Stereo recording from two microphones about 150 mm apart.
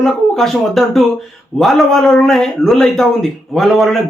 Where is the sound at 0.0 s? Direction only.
Centre (ahead or behind).